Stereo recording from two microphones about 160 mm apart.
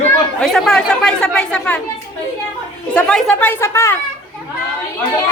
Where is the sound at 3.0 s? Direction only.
5° left (ahead or behind).